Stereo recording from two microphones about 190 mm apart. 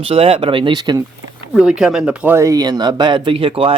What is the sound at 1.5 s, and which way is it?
Speech, 5° right (ahead or behind).